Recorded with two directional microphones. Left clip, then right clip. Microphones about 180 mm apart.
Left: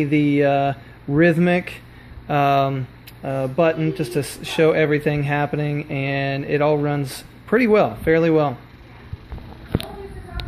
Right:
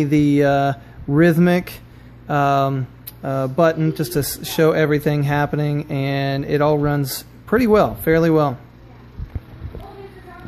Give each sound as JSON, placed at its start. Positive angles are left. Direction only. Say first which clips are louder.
{"t": 0.0, "sound": "speech", "louder": "right 2 dB", "side_deg": -20}
{"t": 2.2, "sound": "speech", "louder": "even", "side_deg": -10}